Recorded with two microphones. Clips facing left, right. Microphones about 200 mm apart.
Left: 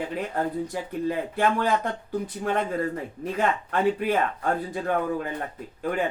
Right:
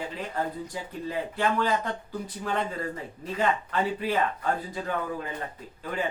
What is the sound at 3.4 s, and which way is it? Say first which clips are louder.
Speech: left 2 dB; 50° left (ahead or behind).